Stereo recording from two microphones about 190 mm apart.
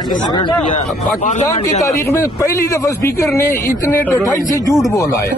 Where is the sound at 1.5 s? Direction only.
15° left (ahead or behind).